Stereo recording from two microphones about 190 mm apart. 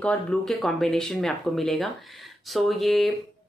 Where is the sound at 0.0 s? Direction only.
5° left (ahead or behind).